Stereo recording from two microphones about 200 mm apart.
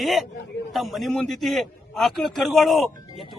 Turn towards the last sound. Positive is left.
turn(degrees=0)  # may be behind; listen again after turning